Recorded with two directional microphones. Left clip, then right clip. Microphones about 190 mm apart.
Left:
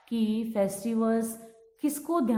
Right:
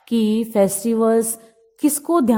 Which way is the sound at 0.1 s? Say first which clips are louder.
Right 11 dB; 50° right (ahead or behind).